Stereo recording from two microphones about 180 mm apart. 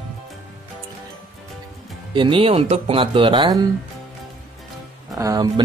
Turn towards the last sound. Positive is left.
turn(degrees=-20)  # may be behind; listen again after turning